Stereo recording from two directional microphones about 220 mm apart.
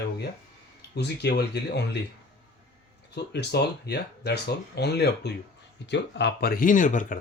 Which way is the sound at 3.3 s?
50° left (ahead or behind).